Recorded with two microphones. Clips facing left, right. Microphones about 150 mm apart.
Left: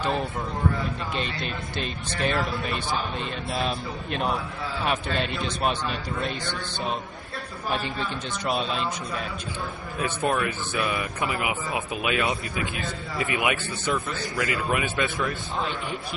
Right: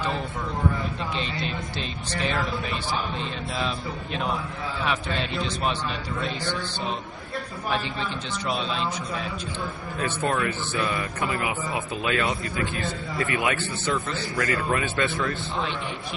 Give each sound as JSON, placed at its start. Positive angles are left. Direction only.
{"t": 1.8, "sound": "speech", "side_deg": 55}
{"t": 9.9, "sound": "speech", "side_deg": 10}